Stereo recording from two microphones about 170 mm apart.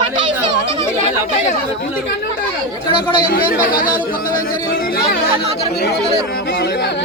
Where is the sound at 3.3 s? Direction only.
60° left (ahead or behind).